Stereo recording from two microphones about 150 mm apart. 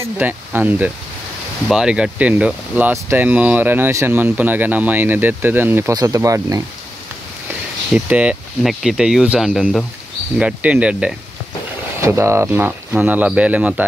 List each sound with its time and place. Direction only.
0.0 s speech: 15° right (ahead or behind)
7.9 s speech: 5° right (ahead or behind)
10.4 s speech: 10° right (ahead or behind)